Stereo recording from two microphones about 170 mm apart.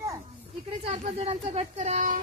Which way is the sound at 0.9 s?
40° right (ahead or behind).